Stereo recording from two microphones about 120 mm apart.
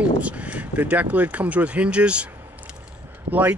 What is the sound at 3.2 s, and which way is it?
Speech, 15° right (ahead or behind).